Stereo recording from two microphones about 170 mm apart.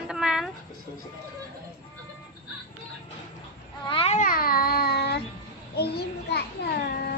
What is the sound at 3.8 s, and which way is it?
Babbling, 30° left (ahead or behind).